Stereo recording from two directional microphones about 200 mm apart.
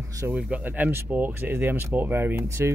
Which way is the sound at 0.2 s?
10° right (ahead or behind).